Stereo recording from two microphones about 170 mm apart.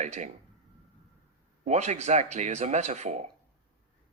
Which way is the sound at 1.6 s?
40° right (ahead or behind).